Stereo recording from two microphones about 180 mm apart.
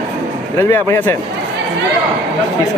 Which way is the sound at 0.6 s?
10° left (ahead or behind).